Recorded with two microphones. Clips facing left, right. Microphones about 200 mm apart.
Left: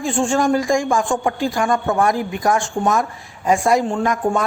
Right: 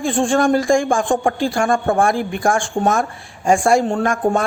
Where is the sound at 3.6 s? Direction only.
35° right (ahead or behind).